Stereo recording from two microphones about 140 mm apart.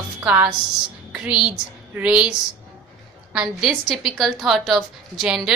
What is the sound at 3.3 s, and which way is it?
A woman's voice, 5° right (ahead or behind).